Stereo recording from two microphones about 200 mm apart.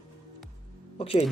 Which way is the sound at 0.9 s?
30° left (ahead or behind).